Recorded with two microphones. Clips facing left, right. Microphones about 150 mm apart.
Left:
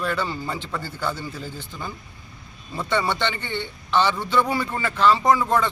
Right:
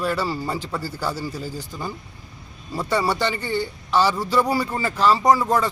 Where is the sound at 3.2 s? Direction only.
35° right (ahead or behind).